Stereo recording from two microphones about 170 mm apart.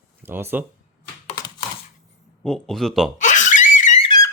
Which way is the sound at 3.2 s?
45° left (ahead or behind).